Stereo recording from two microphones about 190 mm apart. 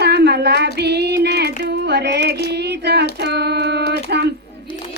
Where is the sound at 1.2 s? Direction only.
60° right (ahead or behind).